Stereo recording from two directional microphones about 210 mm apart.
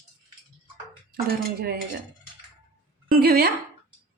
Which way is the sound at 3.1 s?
45° right (ahead or behind).